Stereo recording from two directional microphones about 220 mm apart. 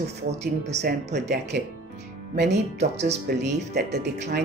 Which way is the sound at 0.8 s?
50° right (ahead or behind).